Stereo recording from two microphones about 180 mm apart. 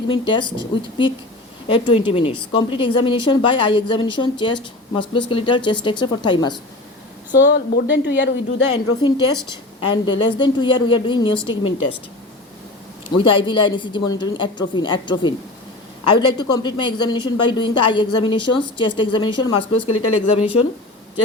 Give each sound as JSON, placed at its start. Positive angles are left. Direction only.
{"t": 0.1, "sound": "speech", "side_deg": 25}
{"t": 7.3, "sound": "speech", "side_deg": 75}
{"t": 9.0, "sound": "speech", "side_deg": 25}
{"t": 13.1, "sound": "speech", "side_deg": 25}